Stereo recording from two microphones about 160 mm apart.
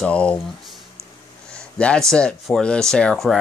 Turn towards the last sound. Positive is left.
turn(degrees=0)  # may be behind; listen again after turning